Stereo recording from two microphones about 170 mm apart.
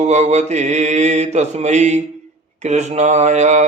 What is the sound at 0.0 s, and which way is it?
Mantra, 40° right (ahead or behind).